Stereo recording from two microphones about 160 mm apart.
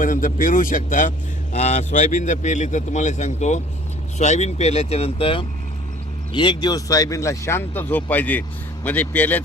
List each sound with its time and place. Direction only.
0.0 s speech: 55° left (ahead or behind)
1.5 s speech: 45° left (ahead or behind); by 9.4 s 10° left (ahead or behind)